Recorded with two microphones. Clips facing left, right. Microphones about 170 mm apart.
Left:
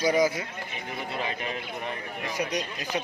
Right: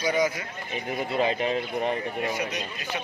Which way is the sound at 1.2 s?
25° right (ahead or behind).